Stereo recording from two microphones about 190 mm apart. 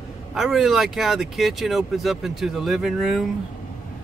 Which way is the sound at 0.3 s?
Centre (ahead or behind).